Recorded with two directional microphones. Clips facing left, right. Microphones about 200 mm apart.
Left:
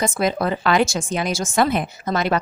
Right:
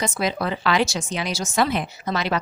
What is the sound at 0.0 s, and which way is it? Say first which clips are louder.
A woman's voice: left 4 dB; 50° left (ahead or behind).